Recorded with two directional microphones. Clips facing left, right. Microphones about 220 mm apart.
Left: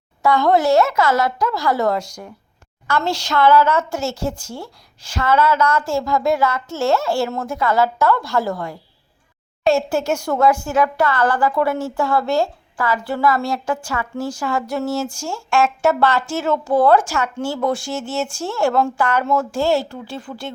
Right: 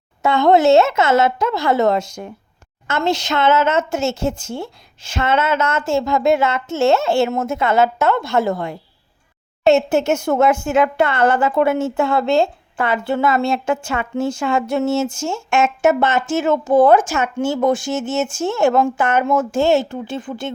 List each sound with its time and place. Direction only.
0.2 s speech: 25° right (ahead or behind)